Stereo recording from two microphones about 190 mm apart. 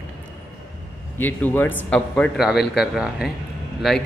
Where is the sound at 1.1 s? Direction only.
10° left (ahead or behind).